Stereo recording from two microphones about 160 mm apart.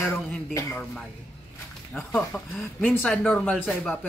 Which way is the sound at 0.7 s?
5° left (ahead or behind).